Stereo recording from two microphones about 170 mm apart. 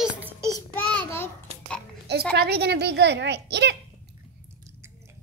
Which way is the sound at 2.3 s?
70° right (ahead or behind).